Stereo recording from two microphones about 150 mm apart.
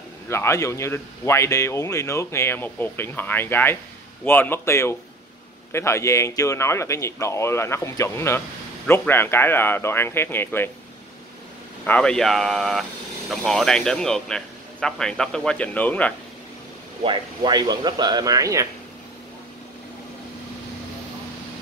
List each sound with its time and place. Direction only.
0.3 s a man's voice: 20° left (ahead or behind)
11.8 s speech: 5° left (ahead or behind)
17.0 s speech: 30° right (ahead or behind)